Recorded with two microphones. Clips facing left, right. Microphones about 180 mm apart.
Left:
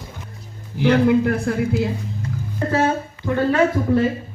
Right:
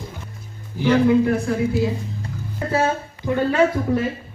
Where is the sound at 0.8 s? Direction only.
60° left (ahead or behind).